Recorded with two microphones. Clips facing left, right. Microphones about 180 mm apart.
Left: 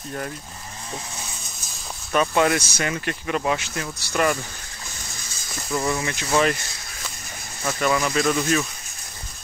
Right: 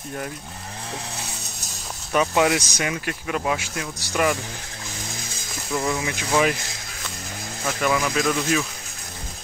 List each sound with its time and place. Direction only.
2.1 s speech: 10° right (ahead or behind)
5.7 s speech: 5° right (ahead or behind)
7.6 s speech: 10° right (ahead or behind)